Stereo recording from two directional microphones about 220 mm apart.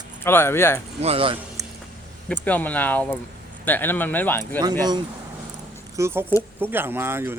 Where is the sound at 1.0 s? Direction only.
25° right (ahead or behind).